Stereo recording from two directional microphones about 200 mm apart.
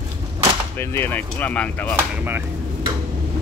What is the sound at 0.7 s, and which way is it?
Speech, 10° left (ahead or behind).